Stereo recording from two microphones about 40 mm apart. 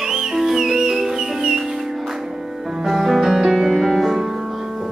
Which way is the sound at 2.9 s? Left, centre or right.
Centre.